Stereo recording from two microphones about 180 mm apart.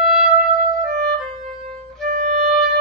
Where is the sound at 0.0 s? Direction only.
Centre (ahead or behind).